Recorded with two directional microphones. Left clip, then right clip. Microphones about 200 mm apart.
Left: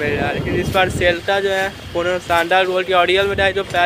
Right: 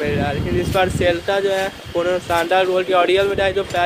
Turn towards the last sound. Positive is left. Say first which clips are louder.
# left 2 dB
turn(degrees=0)  # may be behind; listen again after turning